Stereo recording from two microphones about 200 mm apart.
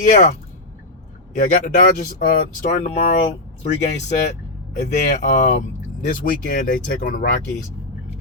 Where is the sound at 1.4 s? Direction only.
40° left (ahead or behind).